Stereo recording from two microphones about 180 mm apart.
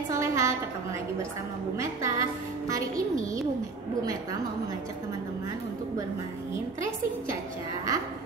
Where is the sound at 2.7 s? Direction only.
20° right (ahead or behind).